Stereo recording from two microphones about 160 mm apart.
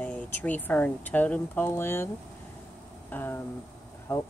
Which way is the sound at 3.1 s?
10° left (ahead or behind).